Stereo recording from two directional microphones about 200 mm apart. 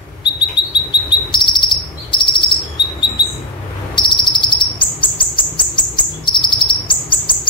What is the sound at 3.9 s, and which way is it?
Bird, 25° left (ahead or behind).